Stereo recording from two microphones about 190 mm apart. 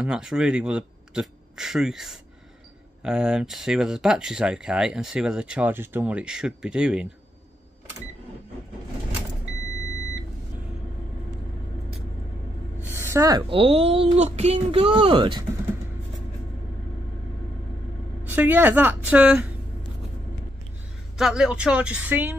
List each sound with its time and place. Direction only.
0.0 s speech: 5° right (ahead or behind)
12.9 s a sound: 15° right (ahead or behind)
13.5 s speech: 30° right (ahead or behind)
18.2 s a woman's voice: 10° right (ahead or behind)
21.2 s speech: 5° right (ahead or behind)